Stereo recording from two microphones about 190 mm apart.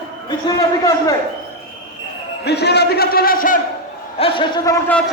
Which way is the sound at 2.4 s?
60° left (ahead or behind).